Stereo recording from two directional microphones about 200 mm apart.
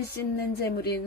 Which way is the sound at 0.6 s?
55° left (ahead or behind).